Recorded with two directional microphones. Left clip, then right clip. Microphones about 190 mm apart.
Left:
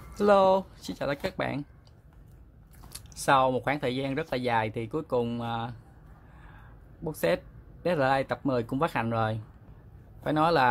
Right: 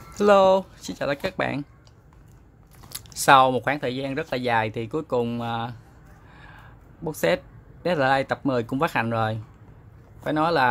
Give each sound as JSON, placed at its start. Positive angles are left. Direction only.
{"t": 0.1, "sound": "speech", "side_deg": -5}
{"t": 2.9, "sound": "a sound", "side_deg": -15}
{"t": 3.6, "sound": "speech", "side_deg": 5}
{"t": 7.0, "sound": "speech", "side_deg": -10}